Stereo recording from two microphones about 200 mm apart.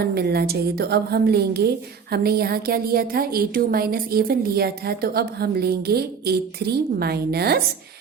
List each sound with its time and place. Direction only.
0.0 s a woman's voice: 50° right (ahead or behind)